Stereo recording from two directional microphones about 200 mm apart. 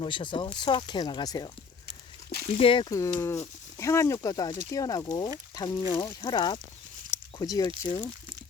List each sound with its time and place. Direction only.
0.0 s speech: 25° left (ahead or behind)
2.6 s speech: 25° left (ahead or behind)
3.2 s speech: 15° left (ahead or behind)
7.1 s a sound: 15° left (ahead or behind)
7.8 s speech: 15° left (ahead or behind)